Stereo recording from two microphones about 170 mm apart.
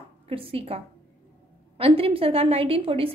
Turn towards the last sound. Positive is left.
turn(degrees=-35)  # may be behind; listen again after turning